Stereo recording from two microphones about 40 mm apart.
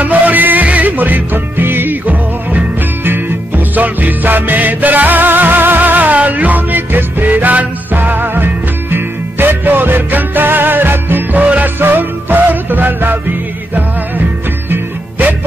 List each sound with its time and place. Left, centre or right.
0.0 s music: right
3.1 s music: right
14.7 s music: right